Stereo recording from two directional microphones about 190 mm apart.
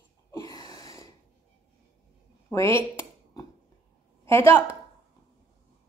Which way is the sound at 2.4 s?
15° left (ahead or behind).